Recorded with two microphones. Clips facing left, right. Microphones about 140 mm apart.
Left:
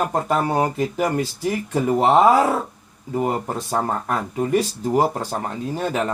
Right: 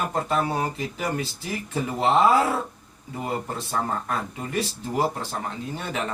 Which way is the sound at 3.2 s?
45° left (ahead or behind).